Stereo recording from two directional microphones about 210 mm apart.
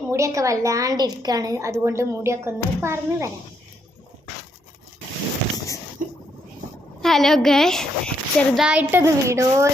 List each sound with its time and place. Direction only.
0.1 s a woman's voice: 15° right (ahead or behind)
6.0 s a sound: 40° right (ahead or behind)
7.0 s a woman's voice: centre (ahead or behind); by 9.6 s 15° right (ahead or behind)